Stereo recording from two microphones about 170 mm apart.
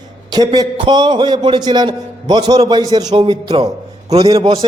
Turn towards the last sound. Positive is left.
turn(degrees=-25)  # may be behind; listen again after turning